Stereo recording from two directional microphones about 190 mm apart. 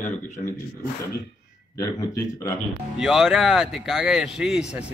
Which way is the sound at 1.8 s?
15° left (ahead or behind).